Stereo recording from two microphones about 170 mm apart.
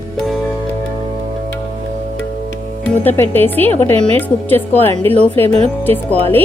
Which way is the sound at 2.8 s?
10° left (ahead or behind).